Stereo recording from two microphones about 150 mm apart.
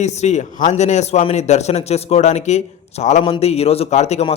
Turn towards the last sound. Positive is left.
turn(degrees=45)  # may be behind; listen again after turning